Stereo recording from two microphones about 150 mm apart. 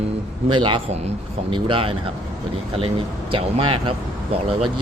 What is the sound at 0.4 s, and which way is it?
Speech, 35° right (ahead or behind).